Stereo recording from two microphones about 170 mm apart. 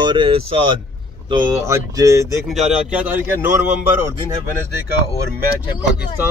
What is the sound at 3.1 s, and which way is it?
Speech, 10° right (ahead or behind).